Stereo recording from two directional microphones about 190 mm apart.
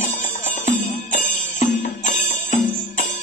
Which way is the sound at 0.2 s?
40° left (ahead or behind).